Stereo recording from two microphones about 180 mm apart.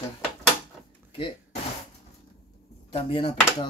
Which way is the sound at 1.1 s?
30° left (ahead or behind).